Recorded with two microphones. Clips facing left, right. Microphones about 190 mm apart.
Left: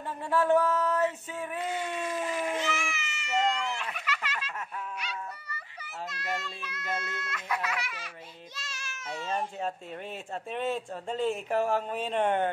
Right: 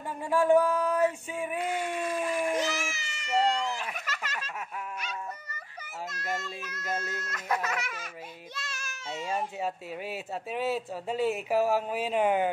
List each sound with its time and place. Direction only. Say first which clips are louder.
0.2 s speech: right 2 dB; 10° right (ahead or behind)
2.5 s baby cry: right 2 dB; 40° right (ahead or behind)
3.9 s a sound: left 1 dB; 45° right (ahead or behind)
6.0 s a child's voice: right 1 dB; 45° right (ahead or behind)
9.1 s speech: right 1 dB; 10° right (ahead or behind)